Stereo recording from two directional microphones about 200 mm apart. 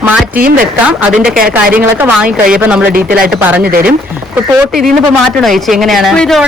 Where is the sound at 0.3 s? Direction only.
45° right (ahead or behind).